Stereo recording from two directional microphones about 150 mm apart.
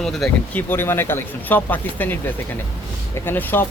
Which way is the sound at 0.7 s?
15° left (ahead or behind).